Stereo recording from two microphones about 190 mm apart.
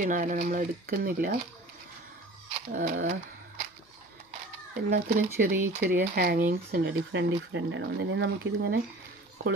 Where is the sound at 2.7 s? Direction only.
45° right (ahead or behind).